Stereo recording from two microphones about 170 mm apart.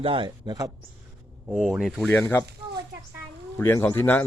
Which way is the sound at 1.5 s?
5° right (ahead or behind).